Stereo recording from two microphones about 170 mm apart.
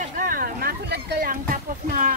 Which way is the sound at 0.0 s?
55° right (ahead or behind).